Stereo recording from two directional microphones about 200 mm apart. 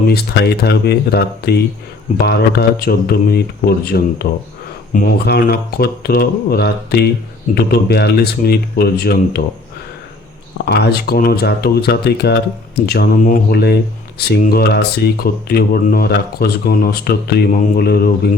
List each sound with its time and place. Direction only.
0.1 s speech: 55° left (ahead or behind)
10.7 s speech: 55° left (ahead or behind)